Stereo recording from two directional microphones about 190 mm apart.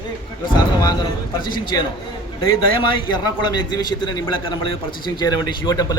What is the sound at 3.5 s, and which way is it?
A man's voice, 20° left (ahead or behind).